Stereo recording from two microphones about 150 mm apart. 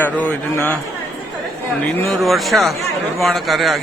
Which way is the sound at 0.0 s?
10° left (ahead or behind).